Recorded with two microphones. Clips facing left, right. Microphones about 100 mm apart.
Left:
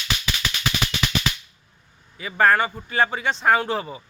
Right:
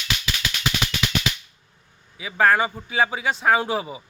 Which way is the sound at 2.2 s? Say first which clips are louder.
Even; centre (ahead or behind).